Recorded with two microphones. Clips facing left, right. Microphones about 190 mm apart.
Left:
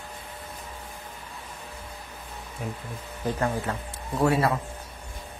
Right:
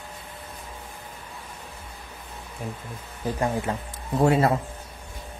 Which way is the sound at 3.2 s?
15° right (ahead or behind).